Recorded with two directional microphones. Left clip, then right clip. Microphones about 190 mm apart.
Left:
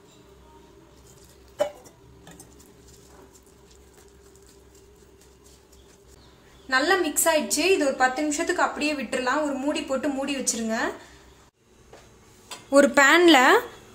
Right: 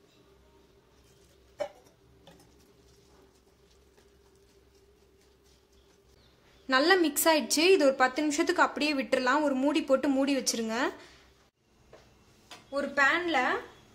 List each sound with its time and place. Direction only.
6.7 s a woman's voice: 55° right (ahead or behind)
12.7 s a woman's voice: 65° left (ahead or behind)